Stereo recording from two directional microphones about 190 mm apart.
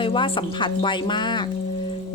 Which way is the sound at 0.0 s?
25° left (ahead or behind).